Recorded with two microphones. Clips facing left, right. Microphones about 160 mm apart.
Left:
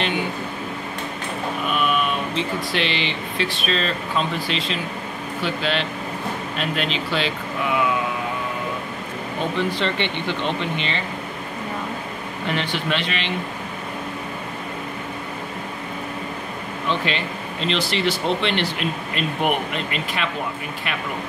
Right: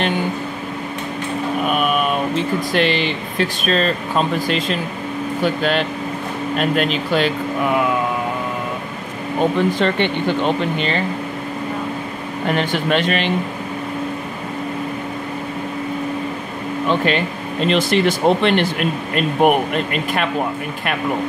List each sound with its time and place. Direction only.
1.7 s a sound: 50° right (ahead or behind)
2.7 s speech: 45° right (ahead or behind)
9.6 s speech: 45° right (ahead or behind)
12.4 s speech: 45° right (ahead or behind)
16.9 s speech: 50° right (ahead or behind)